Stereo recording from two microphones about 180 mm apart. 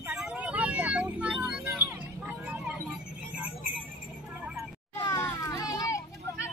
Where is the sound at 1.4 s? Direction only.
10° right (ahead or behind).